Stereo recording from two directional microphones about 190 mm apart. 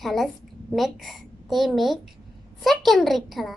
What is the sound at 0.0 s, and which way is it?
A child's voice, centre (ahead or behind).